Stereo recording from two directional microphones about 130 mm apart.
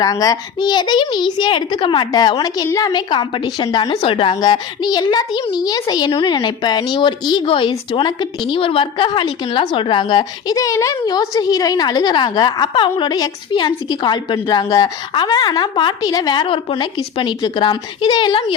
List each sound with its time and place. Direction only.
0.0 s a woman's voice: 30° left (ahead or behind)